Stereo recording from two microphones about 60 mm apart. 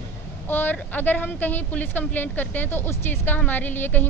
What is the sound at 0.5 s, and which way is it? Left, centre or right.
Speech, left.